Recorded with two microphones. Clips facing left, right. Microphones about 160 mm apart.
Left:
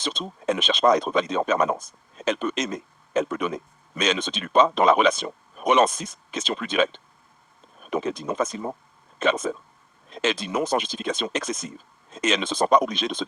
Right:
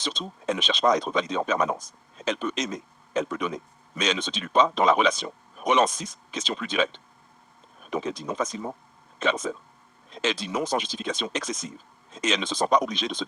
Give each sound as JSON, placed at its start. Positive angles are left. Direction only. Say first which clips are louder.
{"t": 0.0, "sound": "speech", "louder": "left 3 dB", "side_deg": 55}